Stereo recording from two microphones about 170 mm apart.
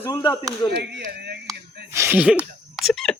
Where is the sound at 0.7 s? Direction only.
70° right (ahead or behind).